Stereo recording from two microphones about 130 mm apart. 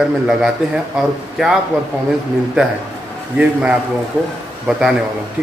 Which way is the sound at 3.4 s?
10° right (ahead or behind).